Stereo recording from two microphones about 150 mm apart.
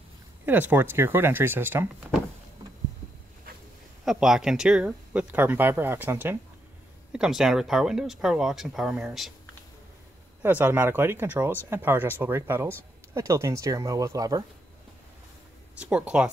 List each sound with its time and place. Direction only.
0.5 s speech: 10° right (ahead or behind)
4.0 s speech: centre (ahead or behind)
10.4 s speech: 10° right (ahead or behind)
15.8 s speech: 10° right (ahead or behind)